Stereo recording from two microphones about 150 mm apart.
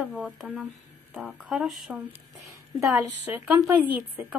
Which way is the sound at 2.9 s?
10° right (ahead or behind).